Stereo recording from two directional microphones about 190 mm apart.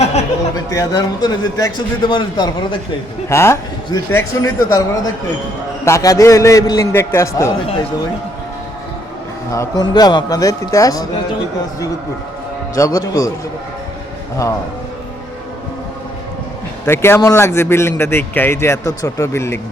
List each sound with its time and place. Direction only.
0.0 s a sound: 35° left (ahead or behind)
0.5 s a man's voice: 20° left (ahead or behind)
5.8 s a man's voice: 15° left (ahead or behind)
9.5 s a man's voice: 15° left (ahead or behind)
12.7 s a man's voice: 15° left (ahead or behind)
16.8 s a man's voice: 10° left (ahead or behind)